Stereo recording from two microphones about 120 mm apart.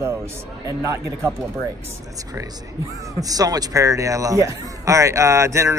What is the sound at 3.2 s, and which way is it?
Speech, 30° right (ahead or behind).